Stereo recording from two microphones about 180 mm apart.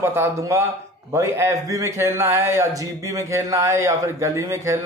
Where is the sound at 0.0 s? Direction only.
15° right (ahead or behind).